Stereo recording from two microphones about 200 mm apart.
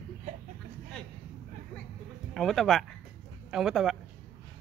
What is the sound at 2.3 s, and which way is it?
Speech, centre (ahead or behind).